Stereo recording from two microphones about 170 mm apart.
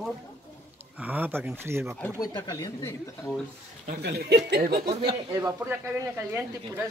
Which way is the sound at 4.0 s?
75° right (ahead or behind).